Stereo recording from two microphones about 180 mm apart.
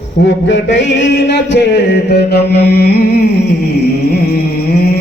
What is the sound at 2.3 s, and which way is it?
Speech, 65° left (ahead or behind).